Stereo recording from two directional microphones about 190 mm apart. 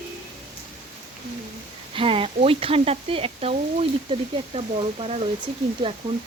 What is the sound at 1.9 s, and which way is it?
Speech, 30° right (ahead or behind).